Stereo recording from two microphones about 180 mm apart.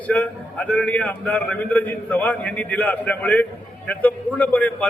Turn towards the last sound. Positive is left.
turn(degrees=10)  # may be behind; listen again after turning